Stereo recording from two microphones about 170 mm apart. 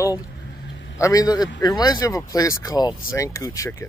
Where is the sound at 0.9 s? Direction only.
20° left (ahead or behind).